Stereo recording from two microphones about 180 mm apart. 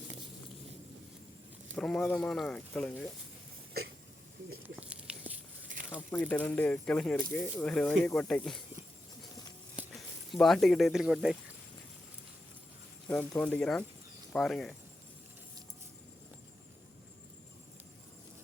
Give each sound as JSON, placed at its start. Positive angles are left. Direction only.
{"t": 1.7, "sound": "speech", "side_deg": 5}
{"t": 5.2, "sound": "a sound", "side_deg": -50}
{"t": 6.1, "sound": "speech", "side_deg": 10}
{"t": 9.7, "sound": "speech", "side_deg": 0}
{"t": 13.1, "sound": "speech", "side_deg": 10}